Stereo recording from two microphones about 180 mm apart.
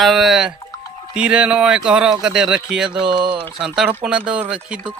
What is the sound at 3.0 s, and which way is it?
Speech, 25° right (ahead or behind).